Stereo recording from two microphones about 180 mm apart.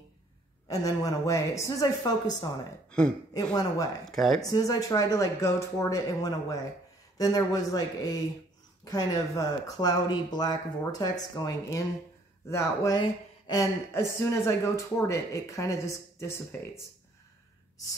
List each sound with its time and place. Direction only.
0.7 s speech: 20° left (ahead or behind)
4.0 s speech: centre (ahead or behind)
4.4 s speech: 20° left (ahead or behind)